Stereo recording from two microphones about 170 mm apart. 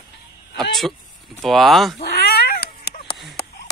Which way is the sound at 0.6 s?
Centre (ahead or behind).